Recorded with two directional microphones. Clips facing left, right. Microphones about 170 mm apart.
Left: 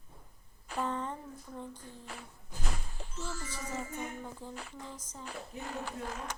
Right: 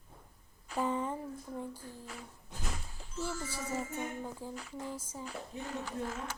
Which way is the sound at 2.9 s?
65° left (ahead or behind).